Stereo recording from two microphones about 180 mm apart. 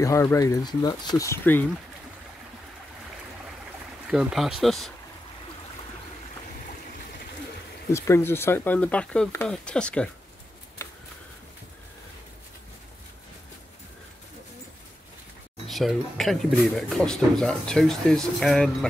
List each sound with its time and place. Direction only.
0.0 s speech: 15° left (ahead or behind)
4.1 s speech: 5° right (ahead or behind)
7.9 s speech: 15° left (ahead or behind)
15.7 s speech: centre (ahead or behind)